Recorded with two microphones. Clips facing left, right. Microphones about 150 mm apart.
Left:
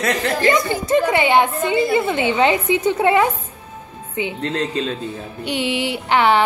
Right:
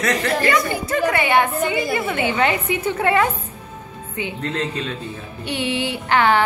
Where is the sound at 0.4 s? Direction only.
20° left (ahead or behind).